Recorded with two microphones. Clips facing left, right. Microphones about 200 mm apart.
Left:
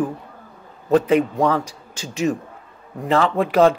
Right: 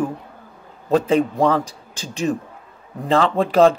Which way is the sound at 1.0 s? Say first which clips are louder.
Even; 30° right (ahead or behind).